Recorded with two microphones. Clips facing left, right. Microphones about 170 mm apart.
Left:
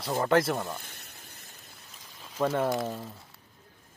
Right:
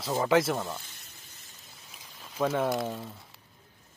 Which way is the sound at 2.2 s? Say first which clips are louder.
Even; centre (ahead or behind).